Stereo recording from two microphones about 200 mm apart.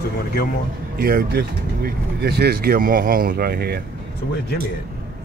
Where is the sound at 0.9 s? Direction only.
50° right (ahead or behind).